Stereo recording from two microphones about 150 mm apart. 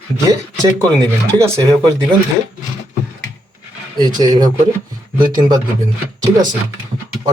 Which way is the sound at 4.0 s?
25° right (ahead or behind).